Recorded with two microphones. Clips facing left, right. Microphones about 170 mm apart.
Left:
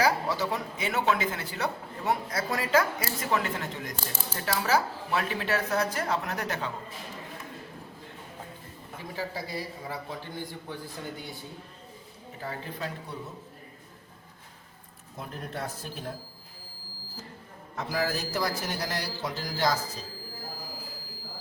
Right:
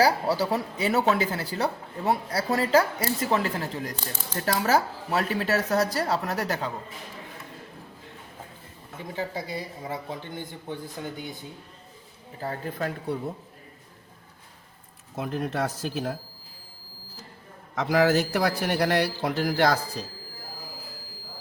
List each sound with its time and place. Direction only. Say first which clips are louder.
0.0 s speech: right 4 dB; 35° right (ahead or behind)
9.1 s a man's voice: right 3 dB; 20° right (ahead or behind)
12.4 s speech: right 5 dB; 40° right (ahead or behind)
12.8 s a man's voice: right 7 dB; 55° right (ahead or behind)
15.1 s speech: right 8 dB; 80° right
17.7 s a man's voice: right 9 dB; 85° right; by 20.1 s 65° right (ahead or behind)